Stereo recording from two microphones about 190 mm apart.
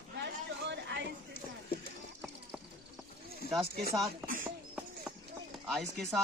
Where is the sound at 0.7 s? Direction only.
65° right (ahead or behind).